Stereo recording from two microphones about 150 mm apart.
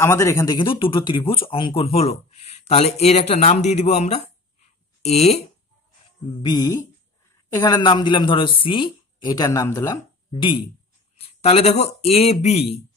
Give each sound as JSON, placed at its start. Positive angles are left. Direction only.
{"t": 0.0, "sound": "speech", "side_deg": 20}
{"t": 4.6, "sound": "a sound", "side_deg": 45}
{"t": 6.4, "sound": "speech", "side_deg": 25}
{"t": 10.3, "sound": "speech", "side_deg": 30}